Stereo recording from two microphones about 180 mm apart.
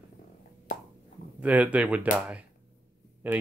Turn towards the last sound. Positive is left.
turn(degrees=-10)  # may be behind; listen again after turning